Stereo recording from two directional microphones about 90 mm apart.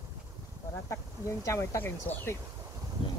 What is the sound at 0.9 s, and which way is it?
Speech, 30° left (ahead or behind).